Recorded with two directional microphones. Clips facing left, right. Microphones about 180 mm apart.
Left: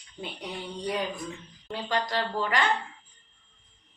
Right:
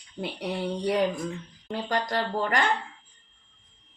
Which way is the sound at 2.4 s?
45° right (ahead or behind).